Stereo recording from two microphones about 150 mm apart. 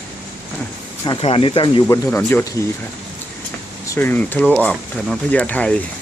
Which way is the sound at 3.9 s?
15° left (ahead or behind).